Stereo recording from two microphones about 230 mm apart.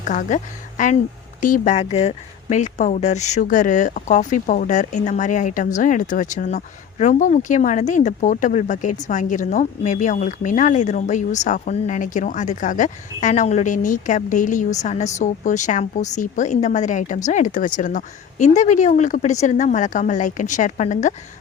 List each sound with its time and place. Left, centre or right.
0.0 s a woman's voice: left